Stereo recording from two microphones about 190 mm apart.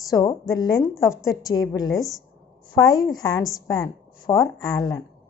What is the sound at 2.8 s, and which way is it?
A woman's voice, 20° left (ahead or behind).